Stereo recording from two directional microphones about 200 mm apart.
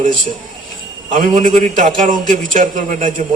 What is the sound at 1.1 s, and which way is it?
A man's voice, 40° right (ahead or behind).